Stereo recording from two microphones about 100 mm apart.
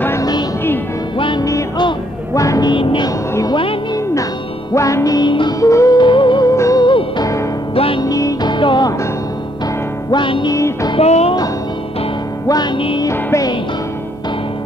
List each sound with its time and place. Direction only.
2.3 s music: 35° left (ahead or behind)
2.7 s music: 55° left (ahead or behind)
4.7 s music: 30° left (ahead or behind)
5.9 s music: 50° left (ahead or behind)
6.5 s music: 30° left (ahead or behind)
6.8 s music: 50° left (ahead or behind)
7.7 s music: 70° left (ahead or behind)
8.0 s music: 35° left (ahead or behind)
10.1 s music: 55° left (ahead or behind)
10.5 s music: 35° left (ahead or behind)
11.0 s music: 90° left
13.0 s music: 35° left (ahead or behind)